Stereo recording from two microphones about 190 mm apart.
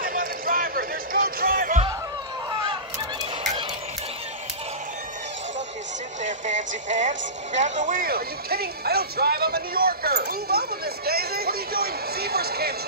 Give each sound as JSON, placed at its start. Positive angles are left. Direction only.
{"t": 0.0, "sound": "music", "side_deg": -50}
{"t": 6.2, "sound": "a sound", "side_deg": -40}
{"t": 6.9, "sound": "speech", "side_deg": -40}